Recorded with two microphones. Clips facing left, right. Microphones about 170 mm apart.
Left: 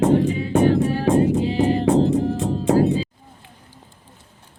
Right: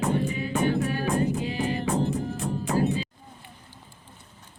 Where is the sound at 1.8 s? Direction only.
90° left.